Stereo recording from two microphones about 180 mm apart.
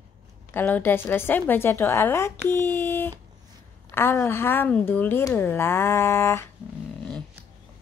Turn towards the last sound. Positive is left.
turn(degrees=15)  # may be behind; listen again after turning